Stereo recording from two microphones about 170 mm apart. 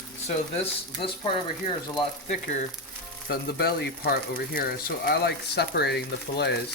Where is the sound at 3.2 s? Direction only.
75° left (ahead or behind).